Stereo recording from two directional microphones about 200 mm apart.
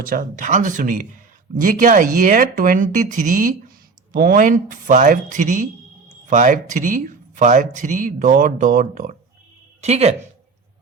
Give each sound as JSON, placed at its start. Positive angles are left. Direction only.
{"t": 0.0, "sound": "speech", "side_deg": -45}